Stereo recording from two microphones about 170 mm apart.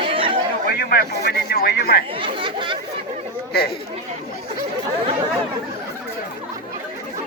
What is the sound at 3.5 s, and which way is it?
Chatter, 65° left (ahead or behind).